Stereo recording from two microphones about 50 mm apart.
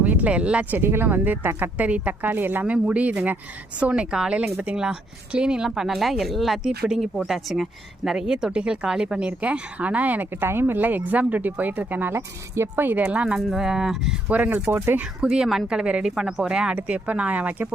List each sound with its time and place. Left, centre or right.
0.0 s speech: right
0.7 s speech: right
2.6 s speech: right
10.4 s speech: right
13.0 s speech: right
13.2 s speech: centre
14.3 s speech: right
14.7 s speech: right
15.2 s speech: centre
16.7 s speech: right